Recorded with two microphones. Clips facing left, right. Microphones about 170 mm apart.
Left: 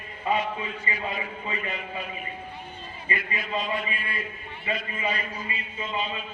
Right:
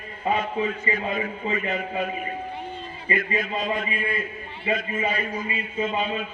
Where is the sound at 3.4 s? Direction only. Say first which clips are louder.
Right 3 dB; 45° right (ahead or behind).